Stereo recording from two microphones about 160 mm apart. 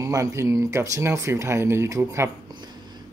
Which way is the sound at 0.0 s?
20° right (ahead or behind).